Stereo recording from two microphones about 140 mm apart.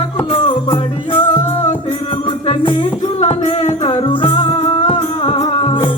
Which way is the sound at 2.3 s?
35° left (ahead or behind).